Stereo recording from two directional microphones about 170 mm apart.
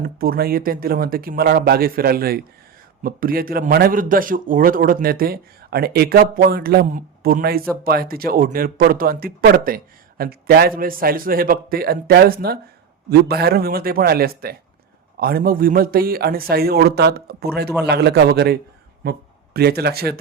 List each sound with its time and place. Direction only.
0.0 s a man's voice: 60° right (ahead or behind)